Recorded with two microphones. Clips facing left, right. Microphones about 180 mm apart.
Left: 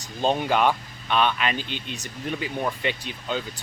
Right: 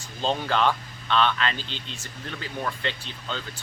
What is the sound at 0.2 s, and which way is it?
Speech, 15° left (ahead or behind).